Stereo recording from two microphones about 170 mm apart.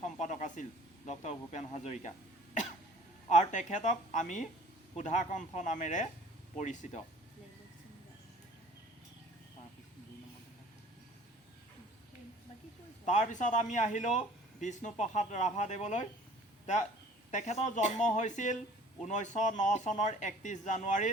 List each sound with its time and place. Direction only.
0.0 s speech: 45° left (ahead or behind)
3.2 s a woman's voice: 45° left (ahead or behind)
13.1 s speech: 45° left (ahead or behind)
17.3 s speech: 45° left (ahead or behind)